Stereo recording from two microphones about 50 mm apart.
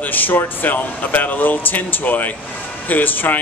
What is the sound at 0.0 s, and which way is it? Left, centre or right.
Speech, left.